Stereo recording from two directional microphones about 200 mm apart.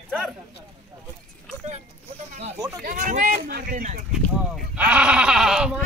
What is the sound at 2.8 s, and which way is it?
Speech, 45° right (ahead or behind).